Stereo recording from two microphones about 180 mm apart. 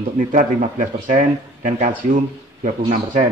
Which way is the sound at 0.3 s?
45° right (ahead or behind).